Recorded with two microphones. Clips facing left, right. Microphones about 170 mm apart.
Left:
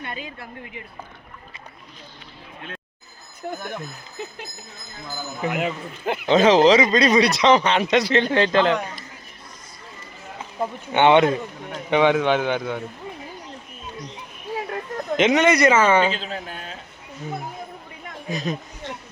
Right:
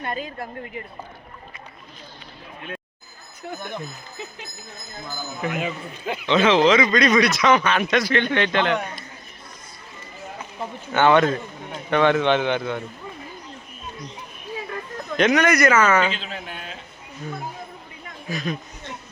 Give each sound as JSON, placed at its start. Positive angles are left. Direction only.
{"t": 0.0, "sound": "speech", "side_deg": -45}
{"t": 3.4, "sound": "speech", "side_deg": 50}
{"t": 5.5, "sound": "speech", "side_deg": 65}
{"t": 10.9, "sound": "a man's voice", "side_deg": 25}
{"t": 15.1, "sound": "speech", "side_deg": 20}
{"t": 18.3, "sound": "speech", "side_deg": 25}